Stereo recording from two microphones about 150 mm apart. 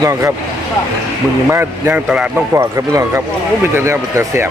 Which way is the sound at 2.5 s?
20° right (ahead or behind).